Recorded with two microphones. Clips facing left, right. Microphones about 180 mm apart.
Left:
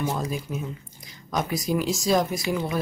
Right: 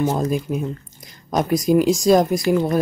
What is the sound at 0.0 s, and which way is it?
Speech, 45° right (ahead or behind).